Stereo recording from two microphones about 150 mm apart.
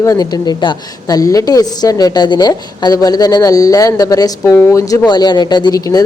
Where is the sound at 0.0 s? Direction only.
20° left (ahead or behind).